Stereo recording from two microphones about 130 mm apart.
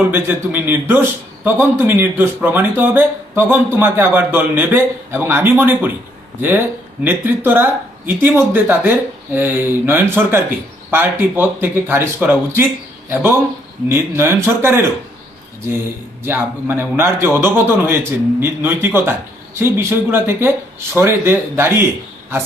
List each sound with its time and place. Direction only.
0.1 s a man's voice: 15° right (ahead or behind)
13.8 s speech: 20° right (ahead or behind)
16.2 s a man's voice: 15° right (ahead or behind)